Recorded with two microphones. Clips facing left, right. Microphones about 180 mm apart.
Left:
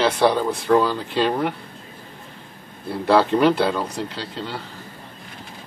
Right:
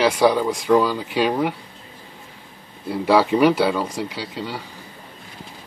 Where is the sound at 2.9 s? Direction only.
10° right (ahead or behind).